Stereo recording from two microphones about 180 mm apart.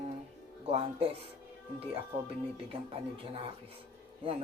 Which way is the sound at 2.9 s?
30° right (ahead or behind).